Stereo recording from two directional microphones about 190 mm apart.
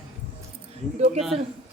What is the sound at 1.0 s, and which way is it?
Speech, 35° right (ahead or behind).